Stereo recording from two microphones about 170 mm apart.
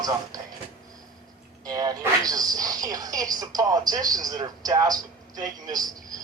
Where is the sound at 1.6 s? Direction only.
20° right (ahead or behind).